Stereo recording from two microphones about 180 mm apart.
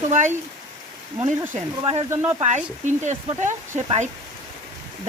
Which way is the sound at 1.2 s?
25° right (ahead or behind).